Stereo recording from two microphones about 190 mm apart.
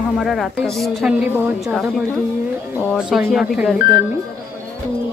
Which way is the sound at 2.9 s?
5° right (ahead or behind).